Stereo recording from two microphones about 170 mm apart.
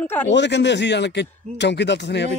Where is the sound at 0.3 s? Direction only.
90° left.